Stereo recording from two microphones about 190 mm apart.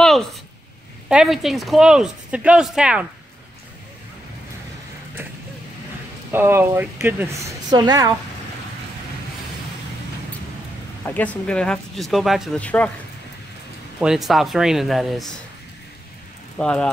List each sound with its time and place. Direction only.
0.0 s a sound: centre (ahead or behind)
1.0 s speech: 5° right (ahead or behind)
6.3 s a woman's voice: 10° right (ahead or behind)
11.1 s speech: 10° left (ahead or behind)
13.9 s speech: 5° right (ahead or behind)
16.5 s speech: 5° left (ahead or behind)